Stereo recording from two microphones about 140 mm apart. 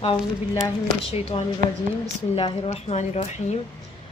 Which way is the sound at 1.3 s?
40° left (ahead or behind).